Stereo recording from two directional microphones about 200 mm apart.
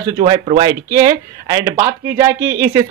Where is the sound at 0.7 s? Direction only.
15° right (ahead or behind).